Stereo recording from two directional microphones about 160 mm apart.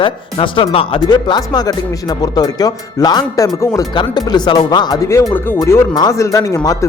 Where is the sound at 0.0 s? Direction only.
30° left (ahead or behind).